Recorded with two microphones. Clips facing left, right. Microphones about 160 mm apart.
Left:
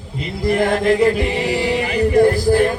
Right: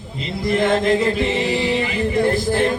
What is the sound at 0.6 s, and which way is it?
Chant, 20° right (ahead or behind).